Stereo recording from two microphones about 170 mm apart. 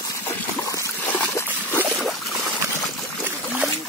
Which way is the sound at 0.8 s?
15° left (ahead or behind).